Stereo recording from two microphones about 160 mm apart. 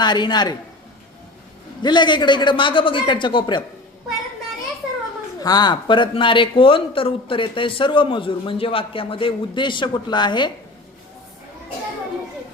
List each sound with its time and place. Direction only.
0.0 s a man's voice: 25° left (ahead or behind)
1.8 s a man's voice: 30° left (ahead or behind)
5.4 s speech: 25° left (ahead or behind)